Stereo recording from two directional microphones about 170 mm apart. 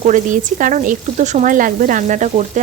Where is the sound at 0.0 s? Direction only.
50° right (ahead or behind).